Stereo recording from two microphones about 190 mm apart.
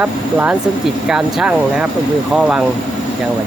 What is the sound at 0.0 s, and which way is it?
Speech, 10° right (ahead or behind).